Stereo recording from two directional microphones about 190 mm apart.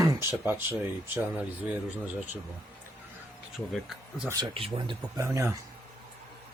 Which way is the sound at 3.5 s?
Centre (ahead or behind).